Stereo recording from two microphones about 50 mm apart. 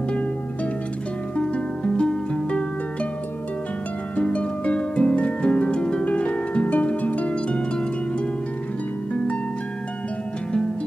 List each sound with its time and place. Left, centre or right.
1.3 s music: centre
4.2 s harp: left